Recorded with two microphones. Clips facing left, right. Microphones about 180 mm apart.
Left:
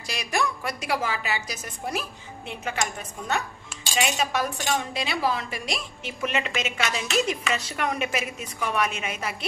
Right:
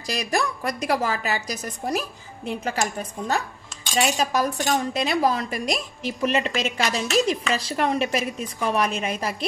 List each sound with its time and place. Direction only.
0.0 s speech: 40° right (ahead or behind)